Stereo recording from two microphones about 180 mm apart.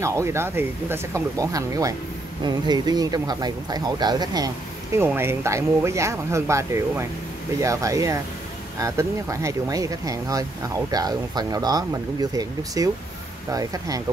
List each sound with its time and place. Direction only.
0.0 s speech: 15° right (ahead or behind)